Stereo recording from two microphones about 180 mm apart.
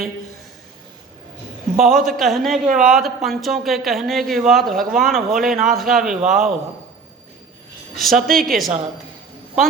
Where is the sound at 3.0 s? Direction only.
Centre (ahead or behind).